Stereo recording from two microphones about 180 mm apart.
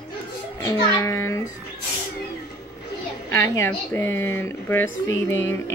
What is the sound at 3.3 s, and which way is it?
A woman's voice, 15° left (ahead or behind).